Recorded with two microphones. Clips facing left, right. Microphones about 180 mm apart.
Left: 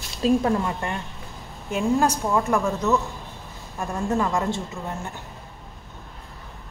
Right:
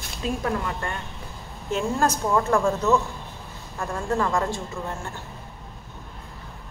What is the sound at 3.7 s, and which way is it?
Speech, 20° left (ahead or behind).